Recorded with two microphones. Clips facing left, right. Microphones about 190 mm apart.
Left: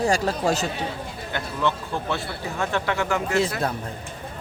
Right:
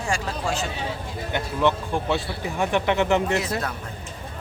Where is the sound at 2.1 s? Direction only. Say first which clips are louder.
Right 3 dB; 15° right (ahead or behind).